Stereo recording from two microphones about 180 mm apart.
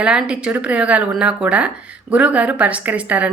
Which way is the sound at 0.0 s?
5° right (ahead or behind).